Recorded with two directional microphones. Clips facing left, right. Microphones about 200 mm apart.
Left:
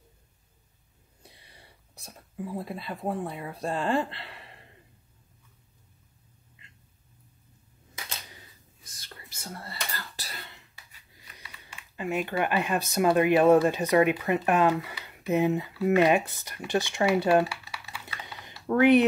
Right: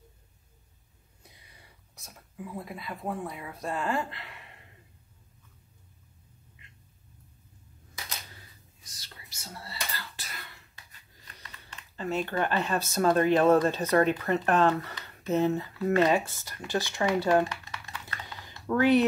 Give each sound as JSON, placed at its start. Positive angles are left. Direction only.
{"t": 1.2, "sound": "speech", "side_deg": 30}
{"t": 8.8, "sound": "whispering", "side_deg": 55}
{"t": 10.1, "sound": "a sound", "side_deg": 30}
{"t": 10.9, "sound": "speech", "side_deg": 10}
{"t": 17.0, "sound": "typing", "side_deg": 15}
{"t": 18.7, "sound": "speech", "side_deg": 20}